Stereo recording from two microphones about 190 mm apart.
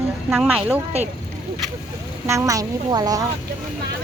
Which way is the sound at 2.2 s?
15° right (ahead or behind).